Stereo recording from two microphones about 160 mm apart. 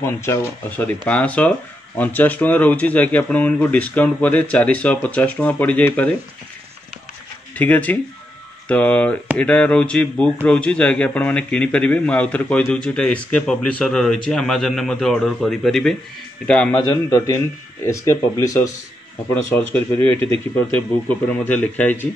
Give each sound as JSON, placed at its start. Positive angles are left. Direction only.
{"t": 0.0, "sound": "a man's voice", "side_deg": 15}
{"t": 7.5, "sound": "a man's voice", "side_deg": 10}
{"t": 16.8, "sound": "a man's voice", "side_deg": 20}